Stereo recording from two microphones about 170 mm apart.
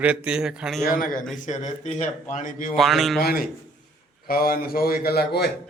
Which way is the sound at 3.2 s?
65° left (ahead or behind).